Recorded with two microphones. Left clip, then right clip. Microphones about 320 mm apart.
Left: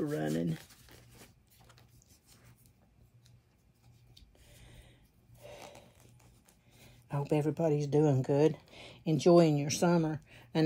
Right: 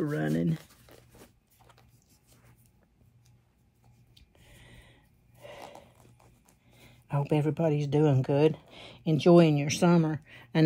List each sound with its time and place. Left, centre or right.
0.0 s speech: right
0.6 s a sound: centre
4.1 s rub: right
6.8 s speech: right